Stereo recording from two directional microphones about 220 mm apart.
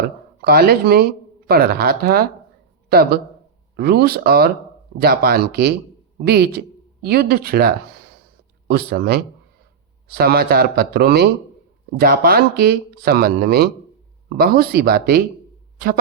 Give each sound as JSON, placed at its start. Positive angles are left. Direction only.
{"t": 0.4, "sound": "speech", "side_deg": -45}